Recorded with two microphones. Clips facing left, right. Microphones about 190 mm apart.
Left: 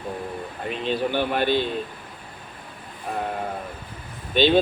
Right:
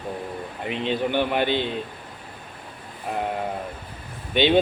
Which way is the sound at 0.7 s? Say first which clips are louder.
Right 1 dB; 20° right (ahead or behind).